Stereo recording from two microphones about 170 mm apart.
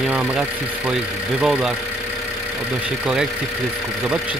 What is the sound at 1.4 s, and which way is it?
Speech, 5° right (ahead or behind).